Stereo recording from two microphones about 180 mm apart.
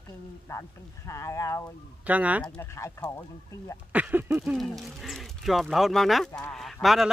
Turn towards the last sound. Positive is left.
turn(degrees=0)  # may be behind; listen again after turning